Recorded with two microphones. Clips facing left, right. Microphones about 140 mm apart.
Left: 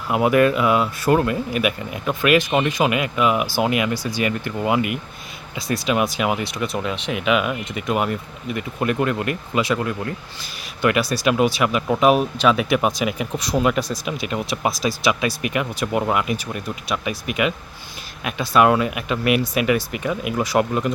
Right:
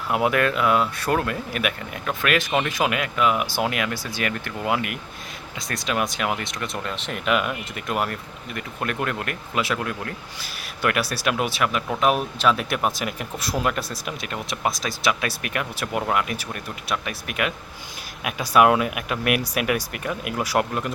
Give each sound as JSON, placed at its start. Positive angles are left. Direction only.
{"t": 0.1, "sound": "speech", "side_deg": 0}
{"t": 17.4, "sound": "speech", "side_deg": 5}
{"t": 18.2, "sound": "speech", "side_deg": -5}